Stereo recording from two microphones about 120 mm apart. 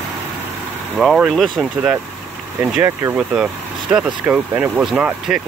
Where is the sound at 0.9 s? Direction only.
5° right (ahead or behind).